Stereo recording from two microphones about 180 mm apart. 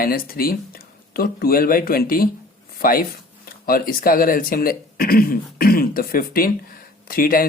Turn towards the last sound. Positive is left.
turn(degrees=50)  # may be behind; listen again after turning